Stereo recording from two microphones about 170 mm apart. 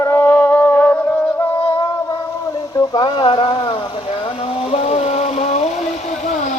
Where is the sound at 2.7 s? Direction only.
25° left (ahead or behind).